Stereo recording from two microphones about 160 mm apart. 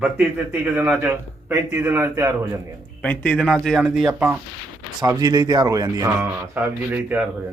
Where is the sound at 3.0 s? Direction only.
10° left (ahead or behind); by 4.3 s 10° right (ahead or behind).